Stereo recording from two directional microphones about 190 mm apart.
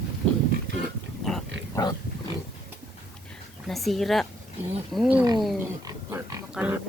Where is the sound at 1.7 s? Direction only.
20° left (ahead or behind).